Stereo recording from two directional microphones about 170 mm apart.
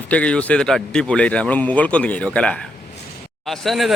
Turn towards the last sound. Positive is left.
turn(degrees=0)  # may be behind; listen again after turning